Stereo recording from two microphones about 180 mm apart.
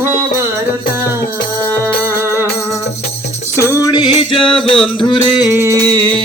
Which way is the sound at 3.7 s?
20° left (ahead or behind).